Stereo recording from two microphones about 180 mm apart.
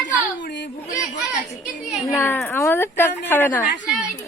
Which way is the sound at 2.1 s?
10° left (ahead or behind).